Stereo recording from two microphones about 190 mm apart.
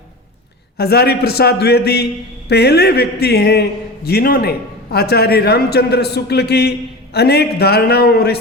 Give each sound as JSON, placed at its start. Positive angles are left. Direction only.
{"t": 0.8, "sound": "a man's voice", "side_deg": 55}